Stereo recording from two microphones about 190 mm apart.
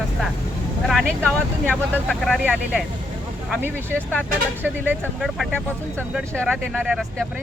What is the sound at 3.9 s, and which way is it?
Speech, 5° left (ahead or behind).